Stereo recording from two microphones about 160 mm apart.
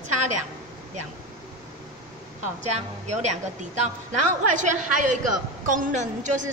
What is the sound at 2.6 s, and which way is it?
A woman's voice, 45° right (ahead or behind).